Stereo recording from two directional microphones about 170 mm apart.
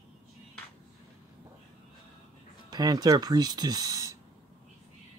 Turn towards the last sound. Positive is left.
turn(degrees=-20)  # may be behind; listen again after turning